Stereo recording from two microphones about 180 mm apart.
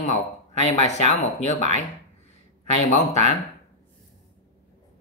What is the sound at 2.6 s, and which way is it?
Speech, 40° left (ahead or behind).